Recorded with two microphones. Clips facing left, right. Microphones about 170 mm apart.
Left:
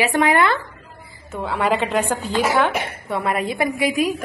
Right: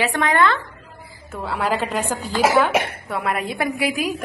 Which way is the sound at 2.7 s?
90° right.